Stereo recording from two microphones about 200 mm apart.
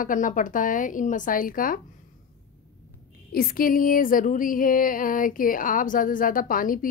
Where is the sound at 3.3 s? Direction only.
45° left (ahead or behind).